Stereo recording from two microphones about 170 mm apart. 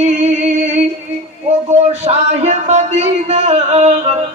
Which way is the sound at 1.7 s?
40° right (ahead or behind).